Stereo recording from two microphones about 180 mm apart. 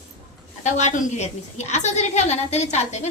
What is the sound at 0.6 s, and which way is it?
A woman's voice, 40° left (ahead or behind).